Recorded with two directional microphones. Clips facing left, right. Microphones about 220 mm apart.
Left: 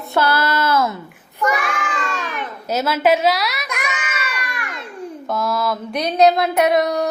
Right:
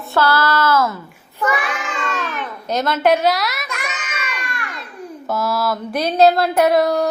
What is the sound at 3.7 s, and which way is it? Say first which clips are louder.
Baby cry: left 2 dB; 15° left (ahead or behind).